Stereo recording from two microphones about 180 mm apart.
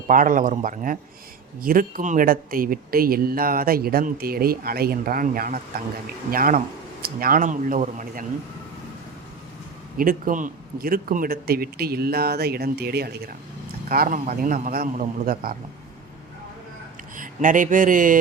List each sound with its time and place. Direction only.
0.1 s speech: 50° right (ahead or behind)
10.0 s speech: 50° right (ahead or behind)
17.2 s speech: 45° right (ahead or behind)